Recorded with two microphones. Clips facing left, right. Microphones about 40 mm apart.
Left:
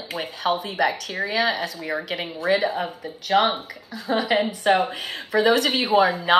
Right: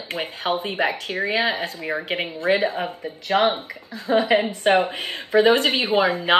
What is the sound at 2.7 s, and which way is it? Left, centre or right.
Speech, right.